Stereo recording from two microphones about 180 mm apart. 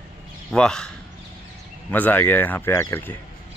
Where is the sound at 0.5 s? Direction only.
5° left (ahead or behind).